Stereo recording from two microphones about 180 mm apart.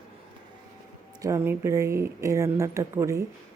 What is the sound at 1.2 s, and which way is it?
Speech, 15° right (ahead or behind).